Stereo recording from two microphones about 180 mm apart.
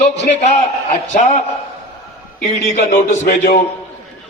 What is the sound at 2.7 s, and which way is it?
Speech, 50° left (ahead or behind).